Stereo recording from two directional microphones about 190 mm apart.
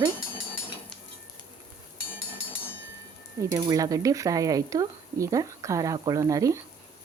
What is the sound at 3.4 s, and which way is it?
Speech, 20° right (ahead or behind).